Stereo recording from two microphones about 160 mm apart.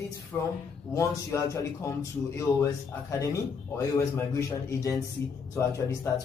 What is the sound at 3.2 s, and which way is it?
A man's voice, 20° left (ahead or behind).